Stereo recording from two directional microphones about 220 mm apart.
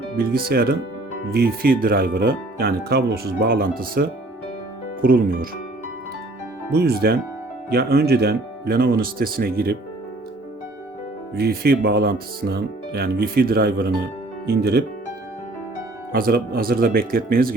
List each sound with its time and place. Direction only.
0.2 s speech: 45° right (ahead or behind)
5.0 s speech: 40° right (ahead or behind)
6.7 s speech: 45° right (ahead or behind)
11.3 s speech: 45° right (ahead or behind)
16.1 s speech: 40° right (ahead or behind)